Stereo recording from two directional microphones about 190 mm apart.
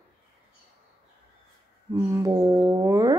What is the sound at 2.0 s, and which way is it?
Speech, 15° right (ahead or behind).